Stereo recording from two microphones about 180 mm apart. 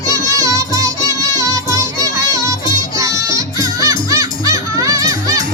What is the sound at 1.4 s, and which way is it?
Music, 20° right (ahead or behind).